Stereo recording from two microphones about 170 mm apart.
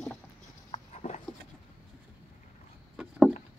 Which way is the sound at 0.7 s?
40° left (ahead or behind).